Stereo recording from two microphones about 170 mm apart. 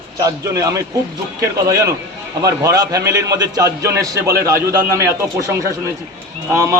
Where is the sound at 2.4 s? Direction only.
20° right (ahead or behind).